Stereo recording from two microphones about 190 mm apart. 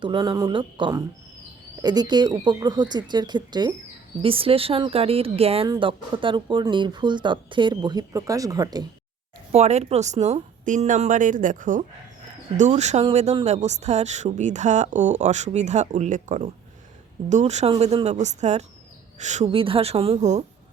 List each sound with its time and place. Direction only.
0.0 s speech: 25° right (ahead or behind)
9.5 s speech: 35° right (ahead or behind)
19.5 s speech: 30° right (ahead or behind)